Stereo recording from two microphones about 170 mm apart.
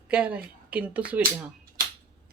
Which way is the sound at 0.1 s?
10° right (ahead or behind).